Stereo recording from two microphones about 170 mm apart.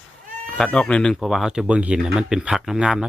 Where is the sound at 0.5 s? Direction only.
5° left (ahead or behind).